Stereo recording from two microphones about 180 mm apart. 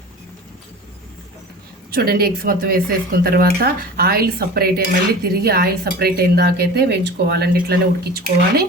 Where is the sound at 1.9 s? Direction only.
60° right (ahead or behind).